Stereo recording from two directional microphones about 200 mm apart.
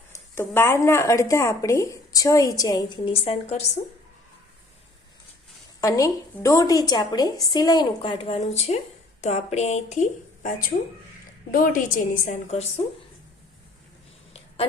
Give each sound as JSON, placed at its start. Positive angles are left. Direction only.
{"t": 0.3, "sound": "speech", "side_deg": 10}
{"t": 5.8, "sound": "a woman's voice", "side_deg": 15}
{"t": 14.3, "sound": "a sound", "side_deg": 30}